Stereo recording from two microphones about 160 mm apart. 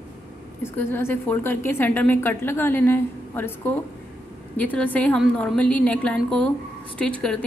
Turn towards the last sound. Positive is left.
turn(degrees=5)  # may be behind; listen again after turning